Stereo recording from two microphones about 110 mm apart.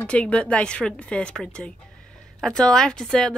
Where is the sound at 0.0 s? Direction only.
10° left (ahead or behind).